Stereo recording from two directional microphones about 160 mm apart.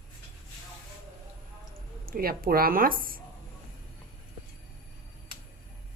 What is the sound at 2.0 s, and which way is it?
A woman's voice, 65° right (ahead or behind).